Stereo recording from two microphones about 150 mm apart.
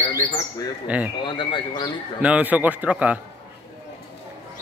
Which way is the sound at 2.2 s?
10° right (ahead or behind).